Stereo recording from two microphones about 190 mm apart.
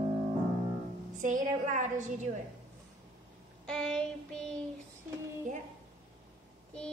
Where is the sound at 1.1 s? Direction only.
40° right (ahead or behind).